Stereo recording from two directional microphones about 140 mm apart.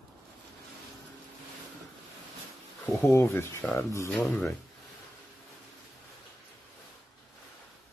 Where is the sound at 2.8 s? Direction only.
20° left (ahead or behind).